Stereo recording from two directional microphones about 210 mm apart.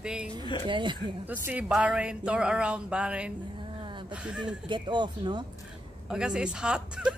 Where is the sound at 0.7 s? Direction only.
20° right (ahead or behind).